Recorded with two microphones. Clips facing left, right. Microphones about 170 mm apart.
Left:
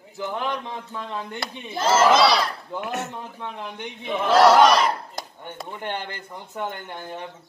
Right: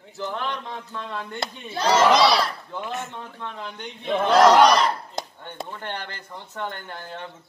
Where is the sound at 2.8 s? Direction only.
70° left (ahead or behind).